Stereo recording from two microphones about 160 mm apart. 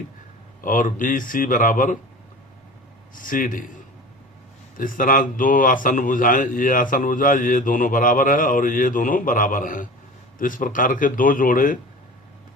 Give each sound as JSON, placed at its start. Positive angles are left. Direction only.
{"t": 0.6, "sound": "mantra", "side_deg": 60}
{"t": 3.2, "sound": "mantra", "side_deg": 55}
{"t": 4.8, "sound": "mantra", "side_deg": 60}